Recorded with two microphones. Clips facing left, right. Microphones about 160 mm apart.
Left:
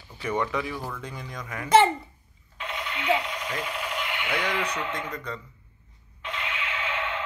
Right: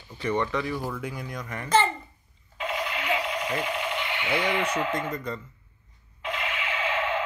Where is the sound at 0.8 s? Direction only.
10° right (ahead or behind).